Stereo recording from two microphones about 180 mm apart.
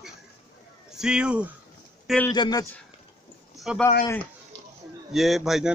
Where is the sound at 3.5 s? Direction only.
Centre (ahead or behind).